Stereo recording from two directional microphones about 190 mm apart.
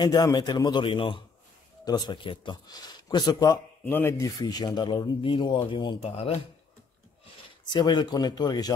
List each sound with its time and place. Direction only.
0.0 s a man's voice: 20° left (ahead or behind)
7.6 s a man's voice: 25° left (ahead or behind)